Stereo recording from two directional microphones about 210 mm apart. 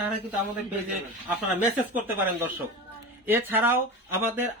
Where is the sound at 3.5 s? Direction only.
10° right (ahead or behind).